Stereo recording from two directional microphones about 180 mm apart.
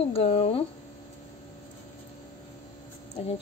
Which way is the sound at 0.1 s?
30° left (ahead or behind).